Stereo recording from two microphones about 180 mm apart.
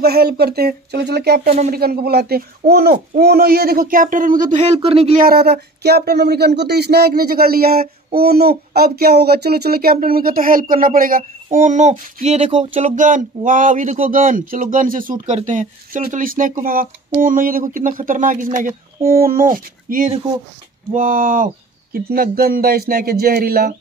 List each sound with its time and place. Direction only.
0.0 s speech: 60° right (ahead or behind)
4.8 s speech: 35° right (ahead or behind)
5.1 s speech: 55° right (ahead or behind)